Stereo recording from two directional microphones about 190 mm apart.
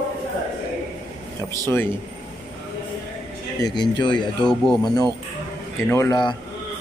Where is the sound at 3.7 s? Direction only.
25° left (ahead or behind).